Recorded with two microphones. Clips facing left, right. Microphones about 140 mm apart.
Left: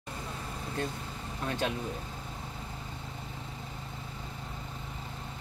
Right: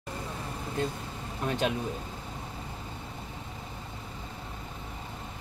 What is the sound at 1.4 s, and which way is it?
Speech, 20° right (ahead or behind).